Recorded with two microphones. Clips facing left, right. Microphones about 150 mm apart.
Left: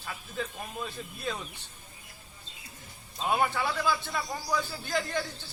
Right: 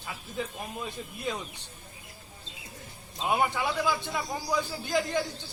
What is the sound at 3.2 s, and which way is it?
A man's voice, 15° right (ahead or behind).